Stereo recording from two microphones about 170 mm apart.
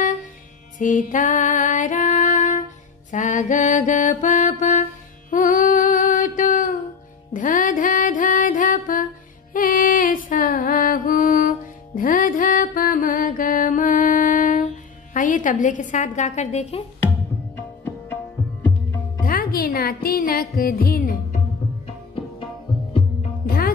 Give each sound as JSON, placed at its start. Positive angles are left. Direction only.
{"t": 0.7, "sound": "music", "side_deg": 50}
{"t": 3.1, "sound": "mantra", "side_deg": 45}
{"t": 5.3, "sound": "child singing", "side_deg": 50}
{"t": 7.3, "sound": "music", "side_deg": 50}
{"t": 15.1, "sound": "a woman's voice", "side_deg": 50}
{"t": 19.2, "sound": "music", "side_deg": 60}
{"t": 23.4, "sound": "music", "side_deg": 60}